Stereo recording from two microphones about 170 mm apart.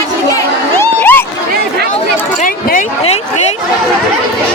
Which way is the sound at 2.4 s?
50° left (ahead or behind).